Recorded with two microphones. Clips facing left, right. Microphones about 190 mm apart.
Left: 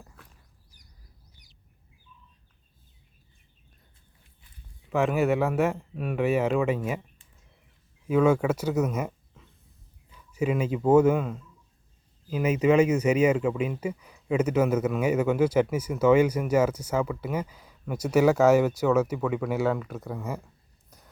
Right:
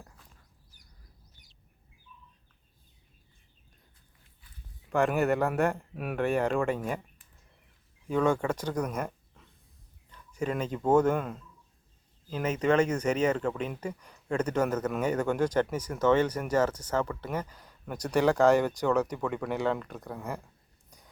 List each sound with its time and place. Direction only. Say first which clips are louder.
0.2 s a sound: left 5 dB; 65° left (ahead or behind)
2.1 s bird: right 1 dB; 80° left
4.9 s speech: left 2 dB; centre (ahead or behind)
8.0 s speech: left 5 dB; 5° left (ahead or behind)